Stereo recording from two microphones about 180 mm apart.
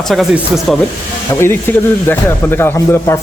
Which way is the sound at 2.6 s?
15° left (ahead or behind).